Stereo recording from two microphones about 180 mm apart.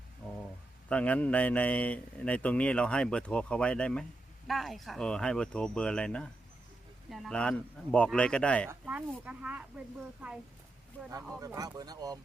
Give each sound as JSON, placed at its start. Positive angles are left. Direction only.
{"t": 0.9, "sound": "a man's voice", "side_deg": 5}
{"t": 8.7, "sound": "speech", "side_deg": -10}
{"t": 11.1, "sound": "speech", "side_deg": -20}